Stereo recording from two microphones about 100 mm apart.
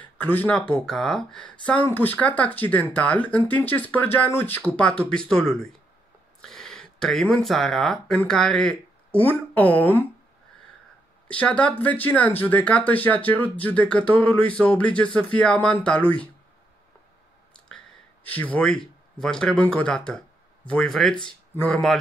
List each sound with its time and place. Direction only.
0.0 s speech: 20° left (ahead or behind)
9.2 s speech: 15° left (ahead or behind)
11.2 s speech: 15° left (ahead or behind)
17.6 s a sound: 15° left (ahead or behind)
19.1 s speech: 5° left (ahead or behind)